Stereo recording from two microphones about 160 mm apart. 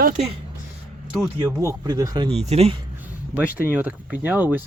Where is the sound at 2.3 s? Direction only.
40° right (ahead or behind).